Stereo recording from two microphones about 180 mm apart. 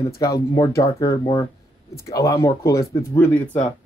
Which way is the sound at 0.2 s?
15° left (ahead or behind).